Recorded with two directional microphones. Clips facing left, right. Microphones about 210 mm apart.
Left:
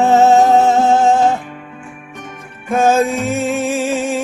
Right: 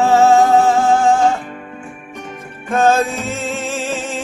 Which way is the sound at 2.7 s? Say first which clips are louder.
Left 1 dB; 15° left (ahead or behind).